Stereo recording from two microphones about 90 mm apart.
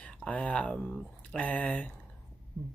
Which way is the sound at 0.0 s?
15° left (ahead or behind).